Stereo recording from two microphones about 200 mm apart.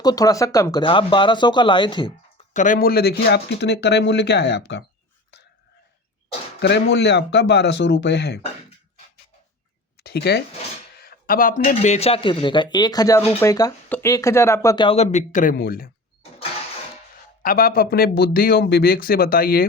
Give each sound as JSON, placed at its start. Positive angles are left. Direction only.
{"t": 0.0, "sound": "speech", "side_deg": 20}
{"t": 2.5, "sound": "speech", "side_deg": 40}
{"t": 6.6, "sound": "speech", "side_deg": 60}
{"t": 10.0, "sound": "speech", "side_deg": 50}
{"t": 14.8, "sound": "speech", "side_deg": 30}
{"t": 17.4, "sound": "speech", "side_deg": 45}